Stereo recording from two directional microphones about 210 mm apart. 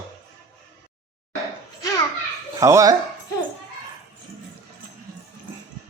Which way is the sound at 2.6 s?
15° right (ahead or behind).